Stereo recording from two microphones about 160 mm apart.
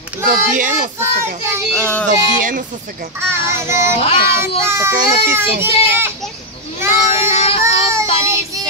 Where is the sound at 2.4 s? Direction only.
55° right (ahead or behind).